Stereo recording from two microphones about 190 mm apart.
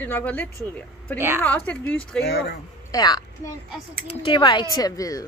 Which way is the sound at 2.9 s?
20° left (ahead or behind).